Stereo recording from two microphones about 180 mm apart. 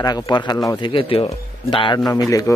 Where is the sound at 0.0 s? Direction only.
25° left (ahead or behind).